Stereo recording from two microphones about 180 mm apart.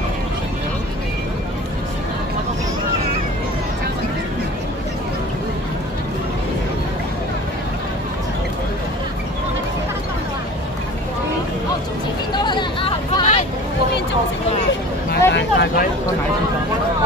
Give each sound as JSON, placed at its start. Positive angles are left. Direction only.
{"t": 12.4, "sound": "chatter", "side_deg": 25}
{"t": 15.0, "sound": "vehicle", "side_deg": 65}